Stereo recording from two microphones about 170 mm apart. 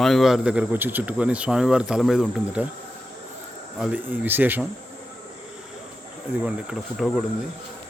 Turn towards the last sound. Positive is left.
turn(degrees=0)  # may be behind; listen again after turning